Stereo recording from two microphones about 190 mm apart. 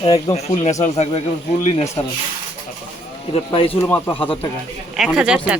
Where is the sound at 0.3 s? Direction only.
35° left (ahead or behind).